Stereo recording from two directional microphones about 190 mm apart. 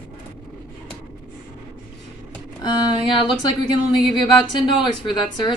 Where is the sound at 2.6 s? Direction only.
25° left (ahead or behind).